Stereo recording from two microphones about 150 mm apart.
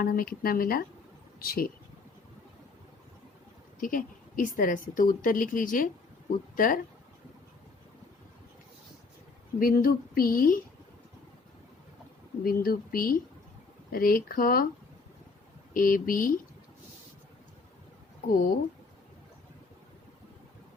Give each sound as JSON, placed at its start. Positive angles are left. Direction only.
{"t": 0.0, "sound": "a woman's voice", "side_deg": 80}
{"t": 3.8, "sound": "a woman's voice", "side_deg": 65}
{"t": 9.6, "sound": "speech", "side_deg": 70}
{"t": 12.4, "sound": "speech", "side_deg": 80}
{"t": 15.7, "sound": "speech", "side_deg": 70}